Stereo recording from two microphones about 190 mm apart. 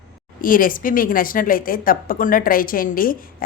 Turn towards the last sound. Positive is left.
turn(degrees=50)  # may be behind; listen again after turning